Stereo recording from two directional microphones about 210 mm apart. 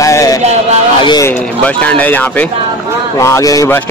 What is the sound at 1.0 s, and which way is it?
A man's voice, 15° left (ahead or behind).